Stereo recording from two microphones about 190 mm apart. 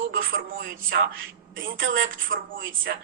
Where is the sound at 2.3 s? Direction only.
45° right (ahead or behind).